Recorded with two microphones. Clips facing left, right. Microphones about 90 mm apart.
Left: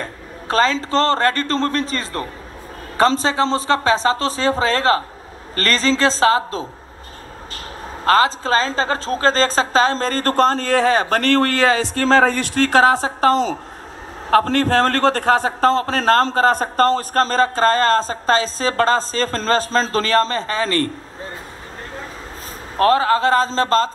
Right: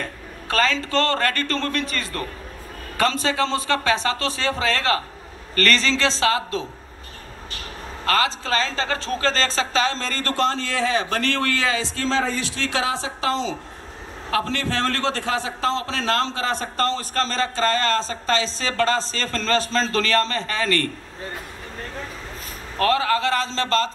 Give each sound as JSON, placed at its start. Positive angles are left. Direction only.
{"t": 0.0, "sound": "a man's voice", "side_deg": 35}
{"t": 8.0, "sound": "a man's voice", "side_deg": 35}
{"t": 22.8, "sound": "a man's voice", "side_deg": 35}